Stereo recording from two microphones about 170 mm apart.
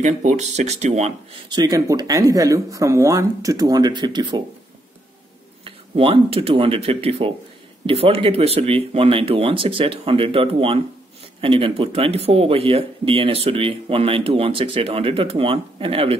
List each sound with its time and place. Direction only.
0.0 s speech: 45° right (ahead or behind)
1.5 s speech: 25° right (ahead or behind)
5.6 s speech: 35° right (ahead or behind)